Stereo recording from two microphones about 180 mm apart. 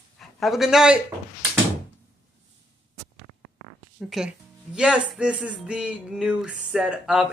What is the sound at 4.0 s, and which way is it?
Speech, centre (ahead or behind).